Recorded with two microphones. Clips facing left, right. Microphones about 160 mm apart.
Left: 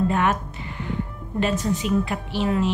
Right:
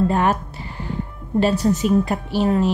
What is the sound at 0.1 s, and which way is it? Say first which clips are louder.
Speech: right 3 dB; 35° right (ahead or behind).